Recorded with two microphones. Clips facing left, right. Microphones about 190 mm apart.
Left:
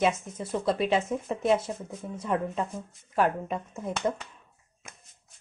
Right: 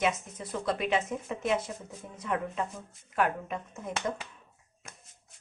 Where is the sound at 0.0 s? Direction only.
25° left (ahead or behind).